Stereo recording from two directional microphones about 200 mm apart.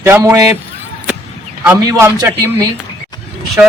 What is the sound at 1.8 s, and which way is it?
Speech, 15° right (ahead or behind).